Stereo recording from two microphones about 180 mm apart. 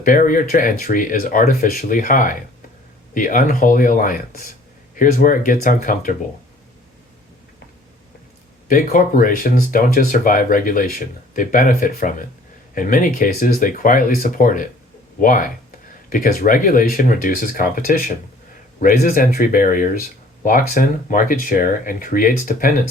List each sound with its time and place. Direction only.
0.0 s speech: 50° left (ahead or behind)
8.6 s speech: 50° left (ahead or behind)